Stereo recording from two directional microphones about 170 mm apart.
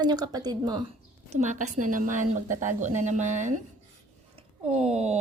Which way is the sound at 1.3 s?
45° right (ahead or behind).